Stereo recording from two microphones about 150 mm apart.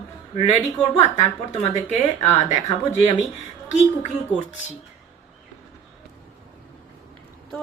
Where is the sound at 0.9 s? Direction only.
40° left (ahead or behind).